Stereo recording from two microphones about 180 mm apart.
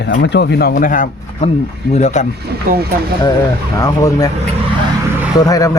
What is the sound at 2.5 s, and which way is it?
Speech, 60° right (ahead or behind).